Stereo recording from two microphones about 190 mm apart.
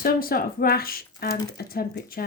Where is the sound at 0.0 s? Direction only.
50° left (ahead or behind).